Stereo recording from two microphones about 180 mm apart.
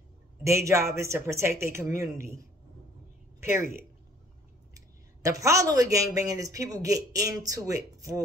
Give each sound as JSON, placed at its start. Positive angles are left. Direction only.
{"t": 0.4, "sound": "speech", "side_deg": -15}
{"t": 3.3, "sound": "speech", "side_deg": -15}